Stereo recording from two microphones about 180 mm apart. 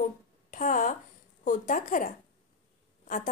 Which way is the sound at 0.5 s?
45° left (ahead or behind).